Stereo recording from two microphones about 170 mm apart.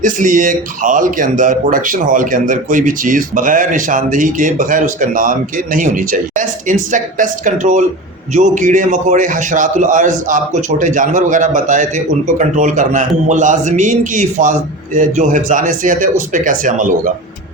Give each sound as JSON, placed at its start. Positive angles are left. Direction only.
{"t": 0.0, "sound": "speech", "side_deg": -50}